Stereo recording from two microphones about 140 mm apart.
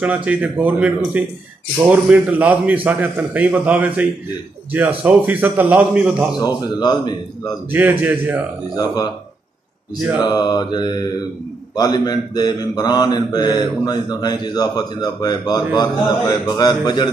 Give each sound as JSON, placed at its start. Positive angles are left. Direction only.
{"t": 0.0, "sound": "a man's voice", "side_deg": -10}
{"t": 6.4, "sound": "speech", "side_deg": 30}
{"t": 7.7, "sound": "a man's voice", "side_deg": -15}
{"t": 8.7, "sound": "speech", "side_deg": 30}
{"t": 10.2, "sound": "mantra", "side_deg": 30}
{"t": 11.7, "sound": "speech", "side_deg": 30}